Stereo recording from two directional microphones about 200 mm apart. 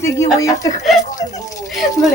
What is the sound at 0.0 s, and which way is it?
Speech, 15° left (ahead or behind).